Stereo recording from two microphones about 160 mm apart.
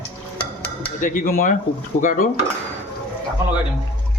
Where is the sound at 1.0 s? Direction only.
55° left (ahead or behind).